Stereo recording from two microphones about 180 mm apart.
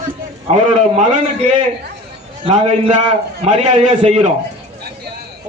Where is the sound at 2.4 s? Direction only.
30° right (ahead or behind).